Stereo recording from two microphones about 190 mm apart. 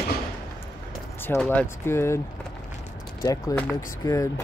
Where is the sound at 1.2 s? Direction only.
10° left (ahead or behind).